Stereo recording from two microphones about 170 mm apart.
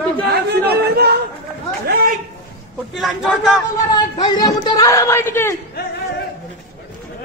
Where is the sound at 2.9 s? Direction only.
Centre (ahead or behind).